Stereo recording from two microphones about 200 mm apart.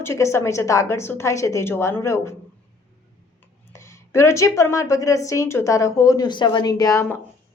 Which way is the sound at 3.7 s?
15° left (ahead or behind).